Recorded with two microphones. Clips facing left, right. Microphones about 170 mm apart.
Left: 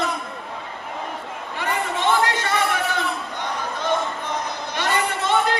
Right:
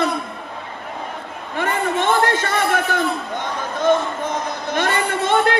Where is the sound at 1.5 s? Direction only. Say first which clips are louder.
Right 5 dB; 50° right (ahead or behind).